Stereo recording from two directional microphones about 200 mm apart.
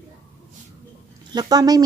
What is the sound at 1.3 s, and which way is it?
Speech, 20° right (ahead or behind).